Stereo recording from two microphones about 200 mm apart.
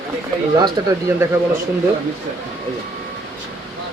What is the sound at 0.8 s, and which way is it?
Speech, 15° right (ahead or behind).